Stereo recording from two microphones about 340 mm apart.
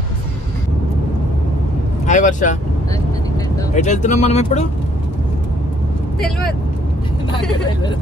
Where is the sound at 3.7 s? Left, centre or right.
Left.